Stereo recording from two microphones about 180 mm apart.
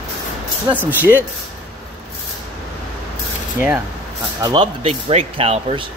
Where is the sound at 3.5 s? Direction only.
10° right (ahead or behind).